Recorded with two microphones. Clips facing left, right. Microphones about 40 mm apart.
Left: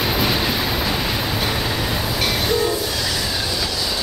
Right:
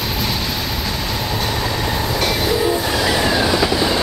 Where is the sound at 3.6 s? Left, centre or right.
Right.